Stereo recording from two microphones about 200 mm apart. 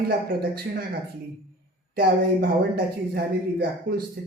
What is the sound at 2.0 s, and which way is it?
Speech, 45° right (ahead or behind).